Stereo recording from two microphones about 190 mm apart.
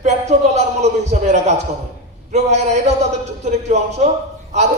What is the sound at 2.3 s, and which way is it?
A man's voice, 35° right (ahead or behind).